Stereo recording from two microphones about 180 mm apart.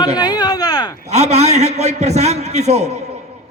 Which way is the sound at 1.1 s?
40° right (ahead or behind).